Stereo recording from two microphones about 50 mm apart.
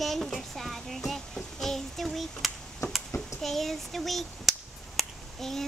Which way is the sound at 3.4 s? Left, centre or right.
Centre.